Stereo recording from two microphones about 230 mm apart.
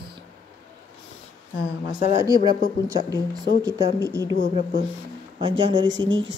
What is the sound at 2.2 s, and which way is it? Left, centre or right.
Speech, centre.